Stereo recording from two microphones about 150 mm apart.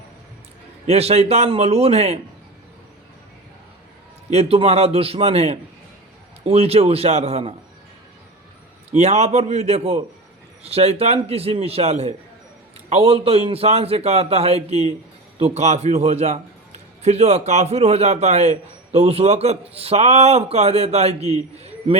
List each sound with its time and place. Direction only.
0.9 s a man's voice: 45° right (ahead or behind)
4.3 s a man's voice: 40° right (ahead or behind)
9.0 s a man's voice: 45° right (ahead or behind)